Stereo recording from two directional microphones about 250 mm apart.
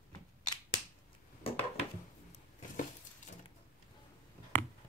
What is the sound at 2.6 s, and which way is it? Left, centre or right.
Keys jangling, left.